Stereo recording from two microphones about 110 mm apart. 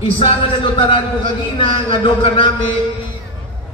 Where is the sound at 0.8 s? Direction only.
50° left (ahead or behind).